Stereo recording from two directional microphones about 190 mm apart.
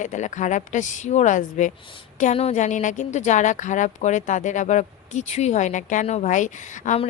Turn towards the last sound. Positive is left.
turn(degrees=40)  # may be behind; listen again after turning